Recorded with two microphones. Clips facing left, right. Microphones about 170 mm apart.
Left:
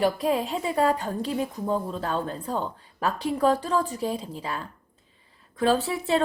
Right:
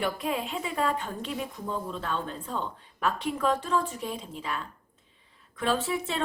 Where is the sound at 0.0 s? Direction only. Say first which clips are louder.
Left 6 dB; 35° left (ahead or behind).